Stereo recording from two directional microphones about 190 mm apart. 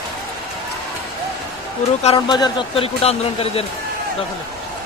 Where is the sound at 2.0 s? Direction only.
30° left (ahead or behind).